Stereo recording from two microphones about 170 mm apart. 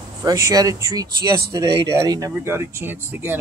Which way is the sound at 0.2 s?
20° right (ahead or behind).